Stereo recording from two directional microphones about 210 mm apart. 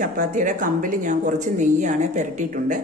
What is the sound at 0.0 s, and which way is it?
Speech, 40° right (ahead or behind).